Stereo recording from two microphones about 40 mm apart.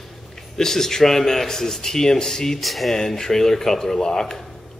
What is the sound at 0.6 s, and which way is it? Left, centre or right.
Speech, centre.